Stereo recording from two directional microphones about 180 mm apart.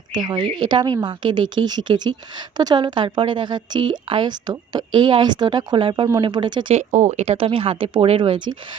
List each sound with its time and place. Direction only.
0.1 s a woman's voice: 25° right (ahead or behind)
6.7 s speech: 40° right (ahead or behind)